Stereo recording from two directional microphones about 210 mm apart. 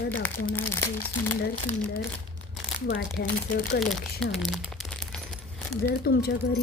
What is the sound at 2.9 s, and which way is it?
Speech, 55° left (ahead or behind).